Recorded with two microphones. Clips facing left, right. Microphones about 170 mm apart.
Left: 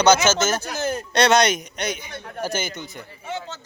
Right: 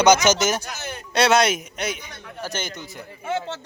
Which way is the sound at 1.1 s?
5° right (ahead or behind).